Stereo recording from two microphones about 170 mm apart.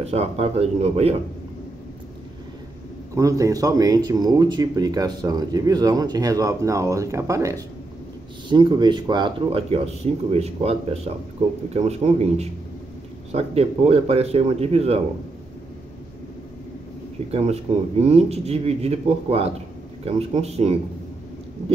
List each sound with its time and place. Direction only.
0.0 s speech: 40° right (ahead or behind)
3.2 s speech: 20° right (ahead or behind); by 15.0 s 35° right (ahead or behind)
17.3 s speech: 35° right (ahead or behind)